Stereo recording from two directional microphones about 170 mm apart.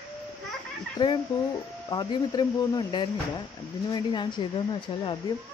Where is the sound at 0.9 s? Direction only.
30° left (ahead or behind).